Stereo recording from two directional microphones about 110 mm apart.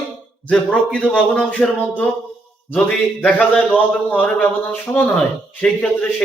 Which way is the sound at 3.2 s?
5° left (ahead or behind).